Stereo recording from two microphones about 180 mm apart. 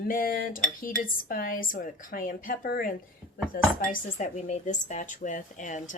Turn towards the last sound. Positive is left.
turn(degrees=45)  # may be behind; listen again after turning